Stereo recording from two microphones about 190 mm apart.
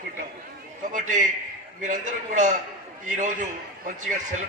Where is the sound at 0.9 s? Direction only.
40° right (ahead or behind).